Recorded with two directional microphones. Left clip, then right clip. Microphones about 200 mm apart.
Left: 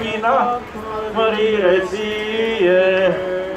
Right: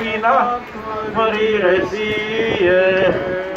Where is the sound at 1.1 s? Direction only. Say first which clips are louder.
Even; 20° right (ahead or behind).